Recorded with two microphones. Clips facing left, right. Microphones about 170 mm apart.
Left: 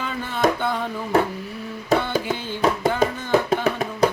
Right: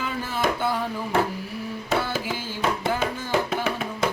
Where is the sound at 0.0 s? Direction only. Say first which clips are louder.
Left 1 dB; 5° right (ahead or behind).